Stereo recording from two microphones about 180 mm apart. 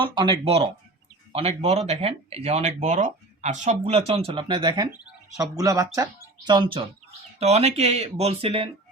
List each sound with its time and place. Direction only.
0.0 s speech: 25° right (ahead or behind)
7.3 s speech: 35° right (ahead or behind)